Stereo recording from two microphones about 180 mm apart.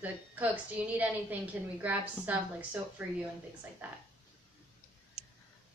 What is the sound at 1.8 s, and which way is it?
A woman's voice, 10° right (ahead or behind).